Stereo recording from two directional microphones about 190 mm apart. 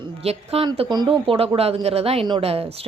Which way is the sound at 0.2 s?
30° right (ahead or behind).